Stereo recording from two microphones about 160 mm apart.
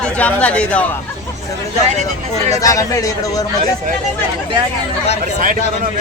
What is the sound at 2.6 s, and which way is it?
Speech, 20° left (ahead or behind).